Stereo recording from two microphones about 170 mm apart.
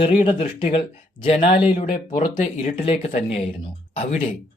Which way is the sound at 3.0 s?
40° left (ahead or behind).